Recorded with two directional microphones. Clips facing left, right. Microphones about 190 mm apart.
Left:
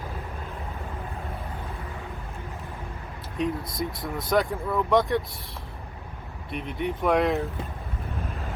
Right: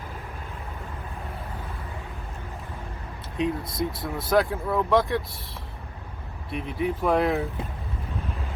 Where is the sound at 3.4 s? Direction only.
Centre (ahead or behind).